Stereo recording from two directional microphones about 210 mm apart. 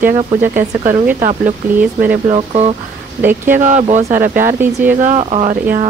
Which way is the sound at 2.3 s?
30° right (ahead or behind).